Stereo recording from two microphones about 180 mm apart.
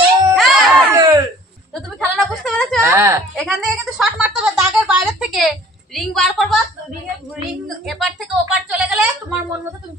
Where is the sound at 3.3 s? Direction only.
Centre (ahead or behind).